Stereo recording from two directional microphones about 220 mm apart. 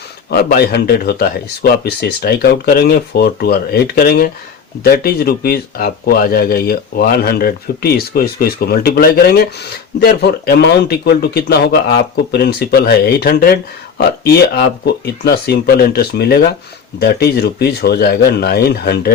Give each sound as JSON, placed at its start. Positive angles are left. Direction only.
{"t": 0.3, "sound": "speech", "side_deg": 45}